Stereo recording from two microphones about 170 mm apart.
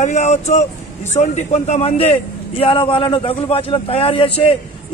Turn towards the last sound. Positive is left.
turn(degrees=30)  # may be behind; listen again after turning